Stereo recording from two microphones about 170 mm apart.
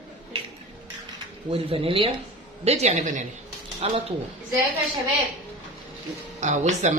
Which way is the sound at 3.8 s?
35° right (ahead or behind).